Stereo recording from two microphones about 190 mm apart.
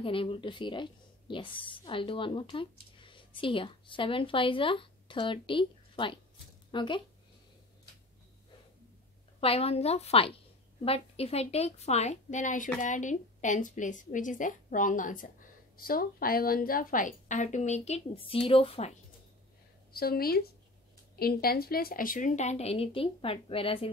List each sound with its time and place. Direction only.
0.0 s speech: 30° left (ahead or behind)
9.4 s a woman's voice: 30° left (ahead or behind)
19.9 s a woman's voice: 55° left (ahead or behind); by 23.9 s 30° left (ahead or behind)